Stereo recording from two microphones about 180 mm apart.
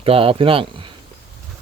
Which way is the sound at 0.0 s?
30° right (ahead or behind).